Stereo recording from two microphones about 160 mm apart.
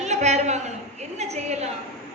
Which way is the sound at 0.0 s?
45° right (ahead or behind).